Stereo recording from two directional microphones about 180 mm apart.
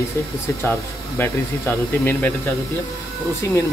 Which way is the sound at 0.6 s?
10° left (ahead or behind).